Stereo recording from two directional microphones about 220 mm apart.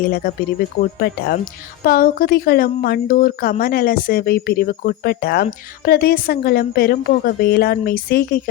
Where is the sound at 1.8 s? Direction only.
40° left (ahead or behind).